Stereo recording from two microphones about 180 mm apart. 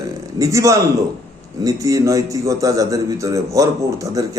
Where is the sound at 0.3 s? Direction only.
15° right (ahead or behind).